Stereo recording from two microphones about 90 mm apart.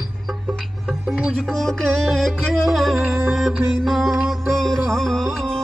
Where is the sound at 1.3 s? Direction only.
5° left (ahead or behind).